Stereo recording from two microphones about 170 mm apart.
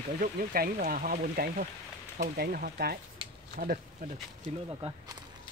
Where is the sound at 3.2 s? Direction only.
30° right (ahead or behind).